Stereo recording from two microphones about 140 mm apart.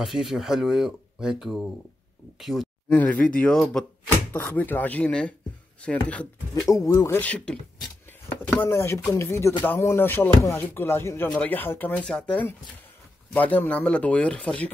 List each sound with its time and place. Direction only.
0.0 s speech: centre (ahead or behind)
2.9 s speech: 10° left (ahead or behind)
6.7 s speech: 25° left (ahead or behind)
7.2 s speech: 10° left (ahead or behind)
8.6 s speech: 20° left (ahead or behind)